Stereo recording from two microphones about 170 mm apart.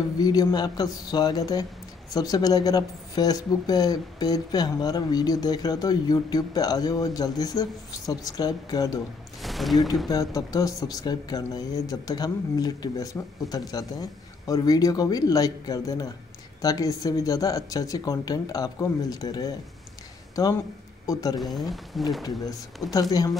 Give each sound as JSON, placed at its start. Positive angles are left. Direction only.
{"t": 0.2, "sound": "speech", "side_deg": 20}
{"t": 9.4, "sound": "speech", "side_deg": 0}
{"t": 10.0, "sound": "speech", "side_deg": 20}
{"t": 21.9, "sound": "speech", "side_deg": 0}
{"t": 22.8, "sound": "speech", "side_deg": 20}